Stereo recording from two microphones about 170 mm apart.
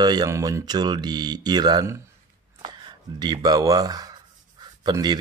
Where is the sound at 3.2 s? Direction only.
25° right (ahead or behind).